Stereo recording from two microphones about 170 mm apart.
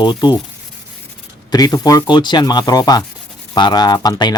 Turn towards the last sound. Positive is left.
turn(degrees=25)  # may be behind; listen again after turning